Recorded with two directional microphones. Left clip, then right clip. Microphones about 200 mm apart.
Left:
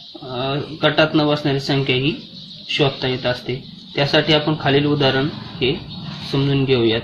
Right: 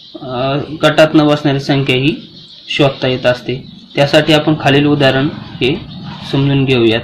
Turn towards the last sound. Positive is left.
turn(degrees=-20)  # may be behind; listen again after turning